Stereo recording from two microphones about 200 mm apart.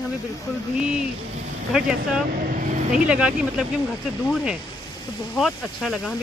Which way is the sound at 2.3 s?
40° right (ahead or behind).